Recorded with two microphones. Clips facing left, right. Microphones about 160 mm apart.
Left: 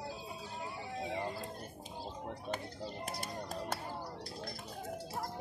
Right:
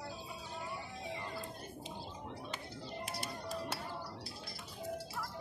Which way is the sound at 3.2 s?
50° left (ahead or behind).